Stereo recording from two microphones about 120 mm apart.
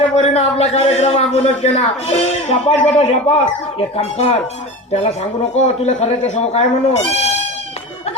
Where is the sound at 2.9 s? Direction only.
55° left (ahead or behind).